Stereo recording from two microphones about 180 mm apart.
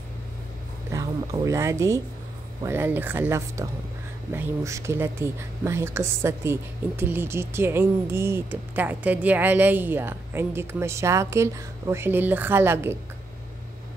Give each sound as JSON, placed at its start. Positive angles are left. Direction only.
{"t": 0.9, "sound": "speech", "side_deg": -20}